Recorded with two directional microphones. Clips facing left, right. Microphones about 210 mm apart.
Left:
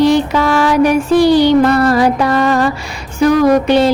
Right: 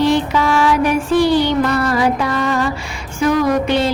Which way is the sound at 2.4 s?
40° left (ahead or behind).